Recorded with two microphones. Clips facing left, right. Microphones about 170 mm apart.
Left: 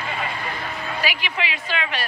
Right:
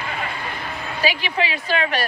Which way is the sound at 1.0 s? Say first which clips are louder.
Right 7 dB; 35° right (ahead or behind).